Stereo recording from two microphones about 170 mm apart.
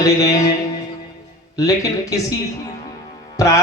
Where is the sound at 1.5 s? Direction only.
20° left (ahead or behind).